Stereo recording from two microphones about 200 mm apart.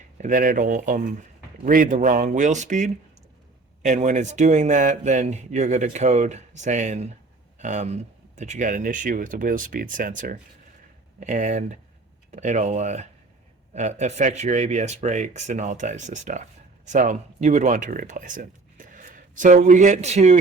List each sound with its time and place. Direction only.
0.2 s speech: 40° right (ahead or behind)